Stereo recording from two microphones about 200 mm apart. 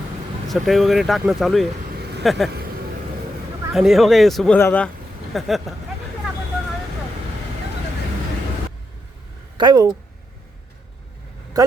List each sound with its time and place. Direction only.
0.4 s speech: centre (ahead or behind)
3.7 s speech: centre (ahead or behind)
9.6 s speech: 20° right (ahead or behind)
11.6 s a man's voice: 15° right (ahead or behind)